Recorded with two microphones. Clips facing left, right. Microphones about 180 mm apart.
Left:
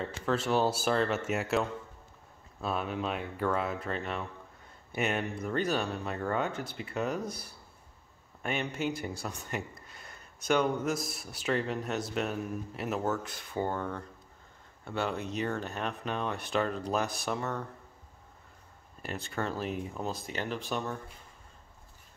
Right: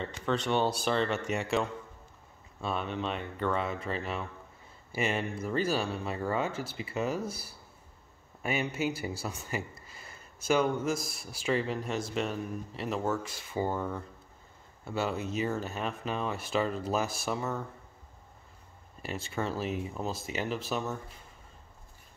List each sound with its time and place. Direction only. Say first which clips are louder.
0.0 s speech: even; 5° left (ahead or behind)
19.0 s speech: right 1 dB; centre (ahead or behind)